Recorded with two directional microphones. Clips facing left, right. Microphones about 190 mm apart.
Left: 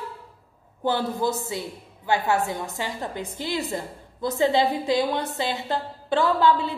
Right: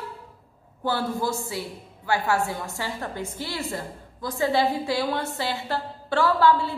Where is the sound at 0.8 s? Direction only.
20° left (ahead or behind).